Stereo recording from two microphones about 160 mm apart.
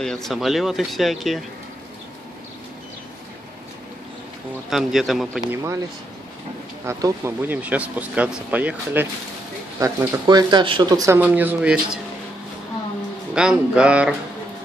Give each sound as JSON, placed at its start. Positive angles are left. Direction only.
{"t": 0.0, "sound": "speech", "side_deg": 5}
{"t": 4.6, "sound": "speech", "side_deg": 0}
{"t": 5.5, "sound": "speech", "side_deg": -15}
{"t": 6.9, "sound": "speech", "side_deg": -20}
{"t": 7.4, "sound": "speech", "side_deg": -10}
{"t": 11.2, "sound": "speech", "side_deg": -10}
{"t": 13.3, "sound": "speech", "side_deg": -5}